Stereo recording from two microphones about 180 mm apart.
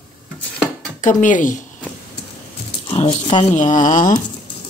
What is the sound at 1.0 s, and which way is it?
Speech, 45° left (ahead or behind).